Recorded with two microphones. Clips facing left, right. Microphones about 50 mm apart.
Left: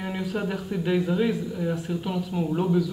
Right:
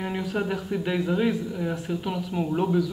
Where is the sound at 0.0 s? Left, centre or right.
Centre.